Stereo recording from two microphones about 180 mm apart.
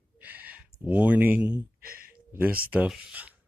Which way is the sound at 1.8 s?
55° right (ahead or behind).